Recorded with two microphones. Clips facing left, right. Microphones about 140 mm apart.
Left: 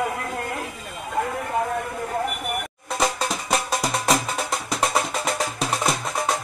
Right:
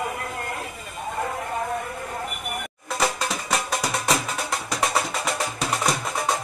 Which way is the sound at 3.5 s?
30° left (ahead or behind).